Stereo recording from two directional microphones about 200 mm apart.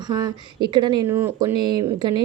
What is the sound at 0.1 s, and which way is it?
Speech, 20° right (ahead or behind).